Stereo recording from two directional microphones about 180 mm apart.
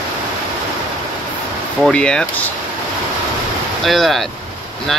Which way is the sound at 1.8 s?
5° left (ahead or behind).